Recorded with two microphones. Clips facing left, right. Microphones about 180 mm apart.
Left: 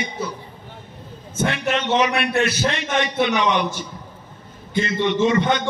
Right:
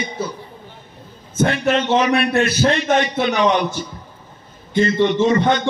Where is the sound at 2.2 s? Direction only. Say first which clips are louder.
Right 3 dB; 40° right (ahead or behind).